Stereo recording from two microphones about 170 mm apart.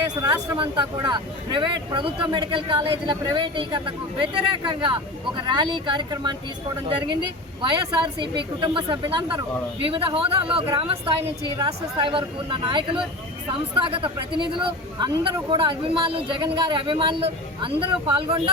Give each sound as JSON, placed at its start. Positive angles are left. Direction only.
{"t": 0.2, "sound": "speech", "side_deg": -20}
{"t": 8.0, "sound": "a woman's voice", "side_deg": -30}